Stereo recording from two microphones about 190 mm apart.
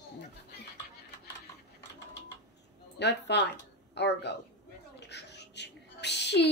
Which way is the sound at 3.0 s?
65° left (ahead or behind).